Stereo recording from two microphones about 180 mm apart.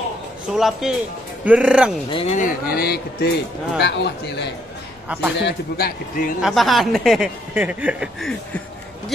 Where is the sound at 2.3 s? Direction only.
55° left (ahead or behind); by 4.5 s 70° left (ahead or behind).